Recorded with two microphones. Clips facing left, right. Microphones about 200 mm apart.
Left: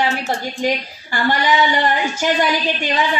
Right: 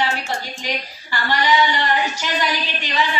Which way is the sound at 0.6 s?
50° left (ahead or behind).